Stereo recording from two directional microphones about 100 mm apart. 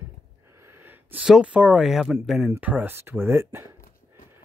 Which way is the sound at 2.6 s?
15° right (ahead or behind).